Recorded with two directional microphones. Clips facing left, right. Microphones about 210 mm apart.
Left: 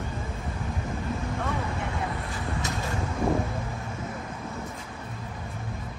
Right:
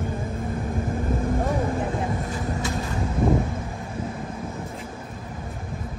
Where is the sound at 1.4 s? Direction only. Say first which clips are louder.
Right 6 dB; 35° right (ahead or behind).